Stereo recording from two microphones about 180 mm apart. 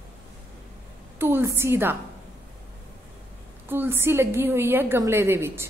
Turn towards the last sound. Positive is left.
turn(degrees=-15)  # may be behind; listen again after turning